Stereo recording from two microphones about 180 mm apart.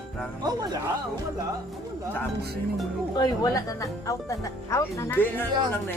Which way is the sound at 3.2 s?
20° left (ahead or behind).